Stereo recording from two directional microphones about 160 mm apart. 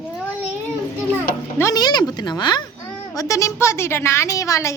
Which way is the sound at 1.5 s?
20° left (ahead or behind).